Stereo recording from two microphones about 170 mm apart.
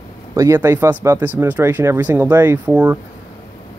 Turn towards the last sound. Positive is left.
turn(degrees=-10)  # may be behind; listen again after turning